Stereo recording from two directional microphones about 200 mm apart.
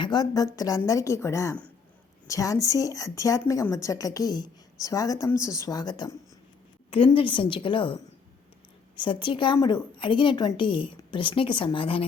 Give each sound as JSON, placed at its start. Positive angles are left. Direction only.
{"t": 0.0, "sound": "a woman's voice", "side_deg": 20}